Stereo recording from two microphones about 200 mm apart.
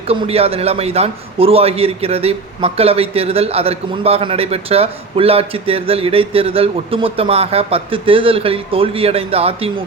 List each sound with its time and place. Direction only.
0.1 s a man's voice: 30° right (ahead or behind)